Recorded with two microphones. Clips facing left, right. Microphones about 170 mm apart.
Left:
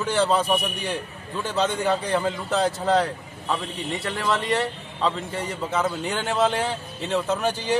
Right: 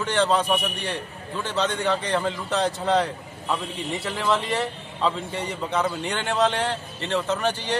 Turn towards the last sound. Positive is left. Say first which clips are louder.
# left 1 dB
turn(degrees=10)  # may be behind; listen again after turning